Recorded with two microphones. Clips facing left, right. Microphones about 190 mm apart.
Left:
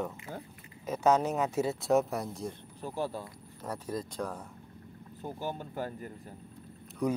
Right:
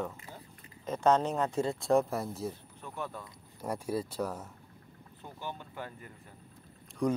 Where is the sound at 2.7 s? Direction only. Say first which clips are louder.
Left 6 dB; 35° left (ahead or behind).